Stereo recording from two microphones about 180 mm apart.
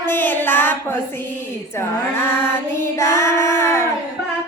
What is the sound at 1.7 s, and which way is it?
Female singing, 15° left (ahead or behind).